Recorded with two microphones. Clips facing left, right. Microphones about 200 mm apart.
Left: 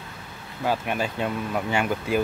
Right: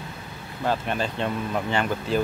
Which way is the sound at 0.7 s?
10° left (ahead or behind).